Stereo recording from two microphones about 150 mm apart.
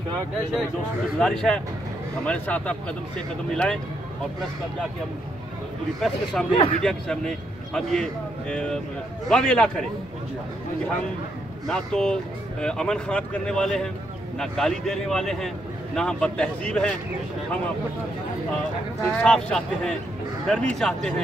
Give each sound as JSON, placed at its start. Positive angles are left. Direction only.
{"t": 1.2, "sound": "a man's voice", "side_deg": 5}
{"t": 5.9, "sound": "a man's voice", "side_deg": 0}
{"t": 6.5, "sound": "a man's voice", "side_deg": 40}
{"t": 6.8, "sound": "a man's voice", "side_deg": 5}
{"t": 11.6, "sound": "a man's voice", "side_deg": 5}
{"t": 19.0, "sound": "a man's voice", "side_deg": 5}